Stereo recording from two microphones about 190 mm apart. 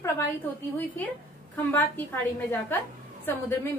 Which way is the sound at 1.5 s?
10° left (ahead or behind).